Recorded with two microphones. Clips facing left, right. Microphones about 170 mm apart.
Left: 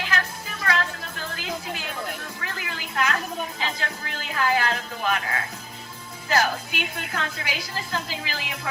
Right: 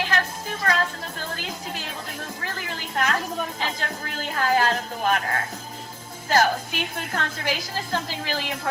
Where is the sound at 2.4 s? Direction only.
40° right (ahead or behind).